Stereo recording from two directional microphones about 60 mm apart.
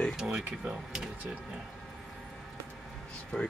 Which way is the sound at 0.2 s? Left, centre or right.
Centre.